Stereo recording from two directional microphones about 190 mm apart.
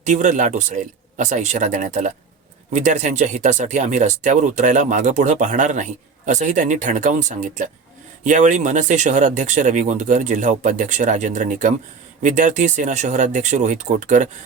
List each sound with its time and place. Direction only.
0.0 s speech: 40° right (ahead or behind)